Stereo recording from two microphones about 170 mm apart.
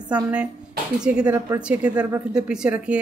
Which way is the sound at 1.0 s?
5° right (ahead or behind).